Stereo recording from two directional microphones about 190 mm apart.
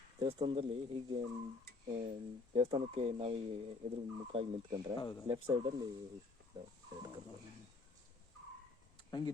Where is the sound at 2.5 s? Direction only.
30° right (ahead or behind).